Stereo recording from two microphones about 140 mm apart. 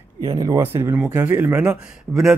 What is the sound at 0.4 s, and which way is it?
Speech, 20° right (ahead or behind).